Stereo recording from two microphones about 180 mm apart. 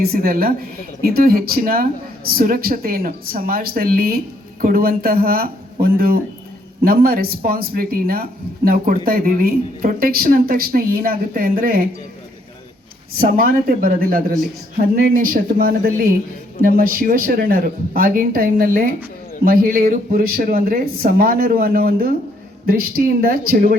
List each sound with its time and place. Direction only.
0.0 s speech: 55° right (ahead or behind)
13.1 s speech: 55° right (ahead or behind)